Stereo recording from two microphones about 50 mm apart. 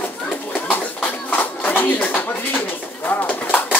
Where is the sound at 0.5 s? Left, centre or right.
Left.